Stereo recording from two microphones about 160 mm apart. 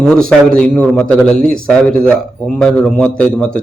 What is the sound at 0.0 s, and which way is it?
A man's voice, 5° left (ahead or behind).